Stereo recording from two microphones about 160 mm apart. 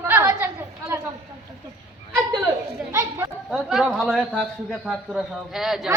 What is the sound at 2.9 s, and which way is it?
Chatter, 20° right (ahead or behind).